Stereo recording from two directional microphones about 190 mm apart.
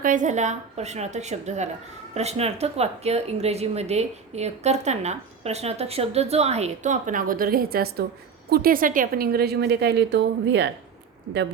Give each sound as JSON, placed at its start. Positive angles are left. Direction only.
{"t": 0.0, "sound": "a woman's voice", "side_deg": -45}